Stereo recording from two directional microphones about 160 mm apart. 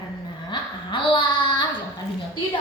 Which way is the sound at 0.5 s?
30° left (ahead or behind).